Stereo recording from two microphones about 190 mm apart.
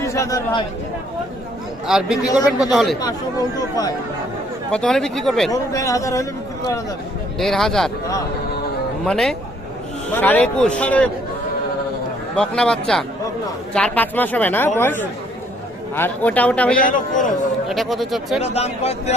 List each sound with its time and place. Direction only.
0.0 s speech: 15° left (ahead or behind)
1.9 s speech: 5° right (ahead or behind)
4.7 s speech: 5° left (ahead or behind)
5.5 s speech: 15° left (ahead or behind)
7.3 s speech: centre (ahead or behind)
9.0 s speech: centre (ahead or behind)
12.4 s speech: 5° left (ahead or behind)
16.8 s a man's voice: 45° left (ahead or behind)
17.7 s speech: centre (ahead or behind)
18.3 s speech: 35° left (ahead or behind)